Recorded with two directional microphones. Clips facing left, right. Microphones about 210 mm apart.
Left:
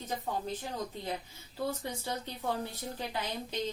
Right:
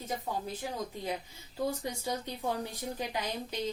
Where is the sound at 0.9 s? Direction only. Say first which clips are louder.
Right 2 dB; 10° right (ahead or behind).